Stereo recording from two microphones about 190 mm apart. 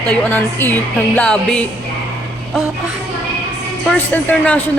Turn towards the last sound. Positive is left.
turn(degrees=10)  # may be behind; listen again after turning